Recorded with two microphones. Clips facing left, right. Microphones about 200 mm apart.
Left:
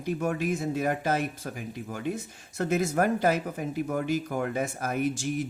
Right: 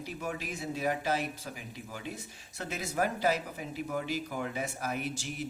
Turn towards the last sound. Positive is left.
turn(degrees=50)  # may be behind; listen again after turning